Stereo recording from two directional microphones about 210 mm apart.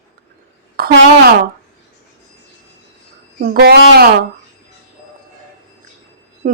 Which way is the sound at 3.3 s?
45° right (ahead or behind).